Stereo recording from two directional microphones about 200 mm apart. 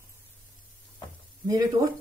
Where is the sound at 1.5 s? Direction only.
15° right (ahead or behind).